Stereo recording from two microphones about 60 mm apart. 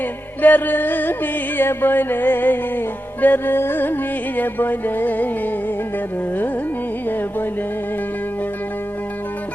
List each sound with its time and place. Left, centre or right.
0.4 s music: left
7.1 s music: left